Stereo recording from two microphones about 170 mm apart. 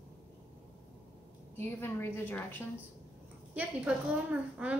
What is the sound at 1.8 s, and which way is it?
Speech, 15° left (ahead or behind).